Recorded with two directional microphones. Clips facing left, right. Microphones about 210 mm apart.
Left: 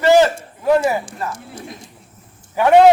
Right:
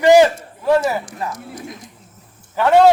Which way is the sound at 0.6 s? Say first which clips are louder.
Left 1 dB; 10° left (ahead or behind).